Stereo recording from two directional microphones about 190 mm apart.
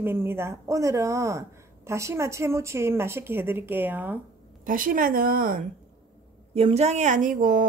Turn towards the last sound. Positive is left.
turn(degrees=-45)  # may be behind; listen again after turning